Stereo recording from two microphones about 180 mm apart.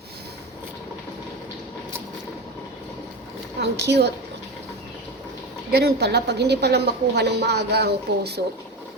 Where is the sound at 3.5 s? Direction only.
70° right (ahead or behind).